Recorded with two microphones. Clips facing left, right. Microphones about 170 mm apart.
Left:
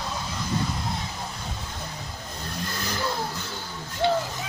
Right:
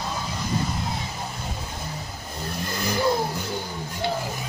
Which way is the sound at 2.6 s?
15° right (ahead or behind).